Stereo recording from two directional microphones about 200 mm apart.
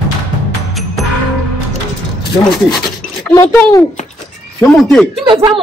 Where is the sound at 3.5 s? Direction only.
5° left (ahead or behind).